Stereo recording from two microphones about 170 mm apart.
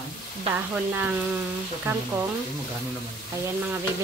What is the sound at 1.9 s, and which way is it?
Frying, 15° right (ahead or behind).